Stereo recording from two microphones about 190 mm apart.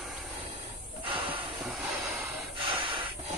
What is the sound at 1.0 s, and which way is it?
Hiss, 25° right (ahead or behind).